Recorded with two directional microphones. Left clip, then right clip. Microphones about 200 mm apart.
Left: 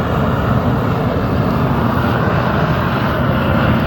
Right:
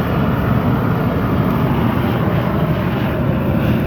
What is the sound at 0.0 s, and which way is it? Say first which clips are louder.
Vehicle: left 2 dB; 15° left (ahead or behind).